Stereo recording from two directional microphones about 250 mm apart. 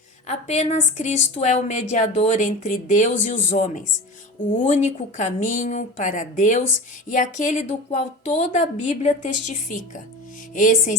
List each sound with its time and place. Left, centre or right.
0.3 s a woman's voice: left